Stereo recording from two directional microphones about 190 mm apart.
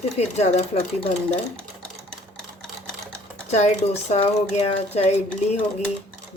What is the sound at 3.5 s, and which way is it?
Speech, 35° left (ahead or behind).